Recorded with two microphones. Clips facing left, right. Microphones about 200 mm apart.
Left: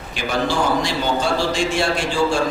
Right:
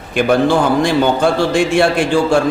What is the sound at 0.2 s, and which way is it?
A man's voice, 55° right (ahead or behind).